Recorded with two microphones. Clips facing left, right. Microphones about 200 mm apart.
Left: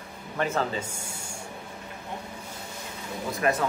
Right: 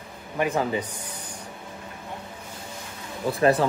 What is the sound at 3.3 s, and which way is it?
Speech, 30° right (ahead or behind).